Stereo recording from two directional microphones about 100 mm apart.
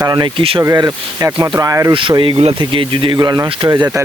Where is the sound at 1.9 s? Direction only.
55° right (ahead or behind).